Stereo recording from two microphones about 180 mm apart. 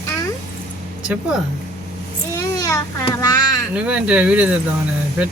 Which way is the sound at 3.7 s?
5° right (ahead or behind).